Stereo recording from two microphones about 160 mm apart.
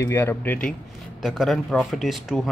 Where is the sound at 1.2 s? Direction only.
Centre (ahead or behind).